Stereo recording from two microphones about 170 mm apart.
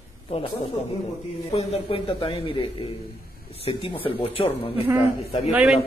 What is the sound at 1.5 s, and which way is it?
Speech, 35° left (ahead or behind).